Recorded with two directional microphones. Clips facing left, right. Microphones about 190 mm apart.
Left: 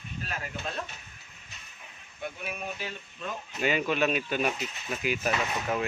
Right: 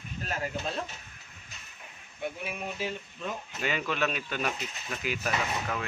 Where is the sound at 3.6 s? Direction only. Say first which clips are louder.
Left 4 dB; 15° left (ahead or behind).